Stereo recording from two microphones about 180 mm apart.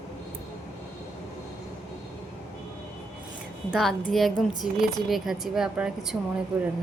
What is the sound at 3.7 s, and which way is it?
A woman's voice, centre (ahead or behind).